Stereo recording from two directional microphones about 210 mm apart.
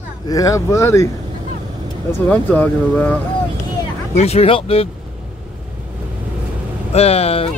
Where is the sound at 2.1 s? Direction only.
10° left (ahead or behind).